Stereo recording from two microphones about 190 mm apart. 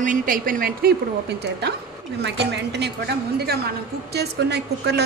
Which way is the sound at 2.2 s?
65° right (ahead or behind).